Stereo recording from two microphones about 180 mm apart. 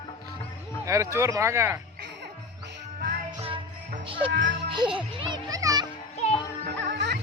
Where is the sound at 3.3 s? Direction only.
30° right (ahead or behind).